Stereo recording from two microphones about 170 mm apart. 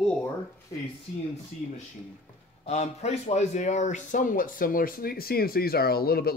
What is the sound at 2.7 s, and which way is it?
Speech, 40° left (ahead or behind).